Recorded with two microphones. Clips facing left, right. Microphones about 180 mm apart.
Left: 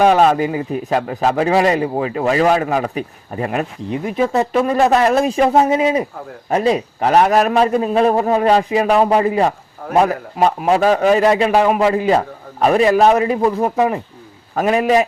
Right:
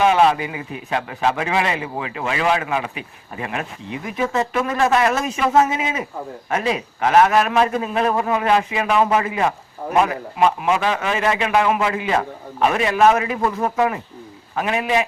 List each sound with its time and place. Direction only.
0.0 s a man's voice: 40° left (ahead or behind)
14.5 s a man's voice: 40° left (ahead or behind)